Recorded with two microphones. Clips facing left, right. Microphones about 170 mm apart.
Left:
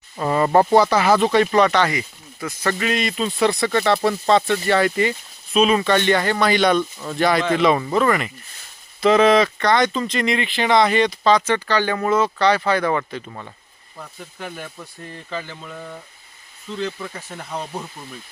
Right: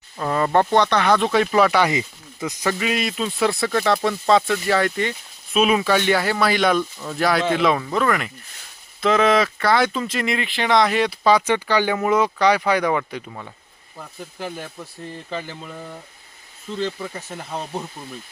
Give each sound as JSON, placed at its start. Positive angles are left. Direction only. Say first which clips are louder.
{"t": 0.2, "sound": "speech", "louder": "left 2 dB", "side_deg": 5}
{"t": 1.9, "sound": "speech", "louder": "right 2 dB", "side_deg": -20}
{"t": 2.7, "sound": "speech", "louder": "left 1 dB", "side_deg": -5}
{"t": 15.1, "sound": "speech", "louder": "even", "side_deg": -5}
{"t": 17.2, "sound": "speech", "louder": "even", "side_deg": 0}